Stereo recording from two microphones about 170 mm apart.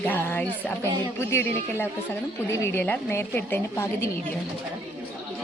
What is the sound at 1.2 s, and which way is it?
A woman's voice, 15° left (ahead or behind).